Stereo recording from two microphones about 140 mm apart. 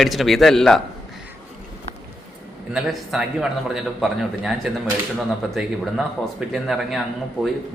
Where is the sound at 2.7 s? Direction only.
5° right (ahead or behind).